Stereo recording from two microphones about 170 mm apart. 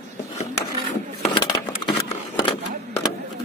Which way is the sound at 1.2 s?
30° left (ahead or behind).